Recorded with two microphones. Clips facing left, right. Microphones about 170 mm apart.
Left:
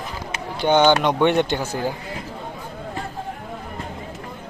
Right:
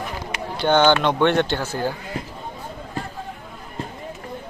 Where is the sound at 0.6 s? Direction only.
15° left (ahead or behind).